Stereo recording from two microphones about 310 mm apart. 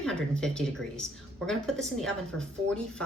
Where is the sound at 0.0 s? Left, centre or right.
Centre.